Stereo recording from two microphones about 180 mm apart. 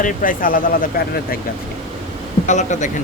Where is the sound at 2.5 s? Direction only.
40° left (ahead or behind).